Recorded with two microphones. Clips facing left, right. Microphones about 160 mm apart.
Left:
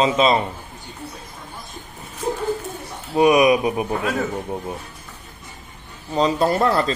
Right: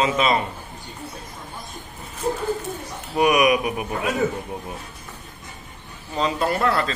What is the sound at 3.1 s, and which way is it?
Speech, 25° left (ahead or behind).